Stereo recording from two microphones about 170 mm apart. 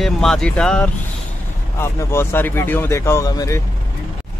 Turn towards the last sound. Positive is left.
turn(degrees=20)  # may be behind; listen again after turning